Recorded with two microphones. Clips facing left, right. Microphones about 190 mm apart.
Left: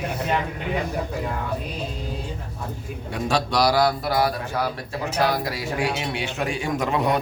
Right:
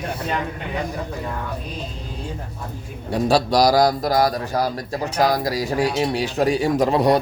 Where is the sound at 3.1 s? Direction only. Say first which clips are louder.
Right 6 dB; 35° right (ahead or behind).